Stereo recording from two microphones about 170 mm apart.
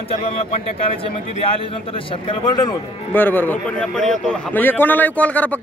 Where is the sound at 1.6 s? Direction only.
30° left (ahead or behind).